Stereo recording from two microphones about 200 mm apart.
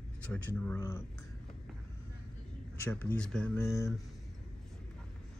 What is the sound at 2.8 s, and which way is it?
Speech, 10° left (ahead or behind).